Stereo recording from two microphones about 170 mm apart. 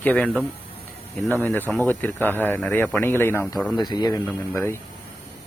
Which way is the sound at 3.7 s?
25° left (ahead or behind).